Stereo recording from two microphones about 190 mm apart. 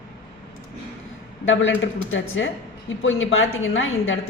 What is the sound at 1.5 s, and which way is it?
A woman's voice, 90° left.